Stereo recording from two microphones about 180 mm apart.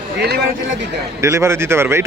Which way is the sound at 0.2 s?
65° right (ahead or behind).